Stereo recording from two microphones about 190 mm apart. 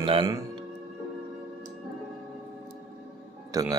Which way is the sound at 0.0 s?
25° right (ahead or behind).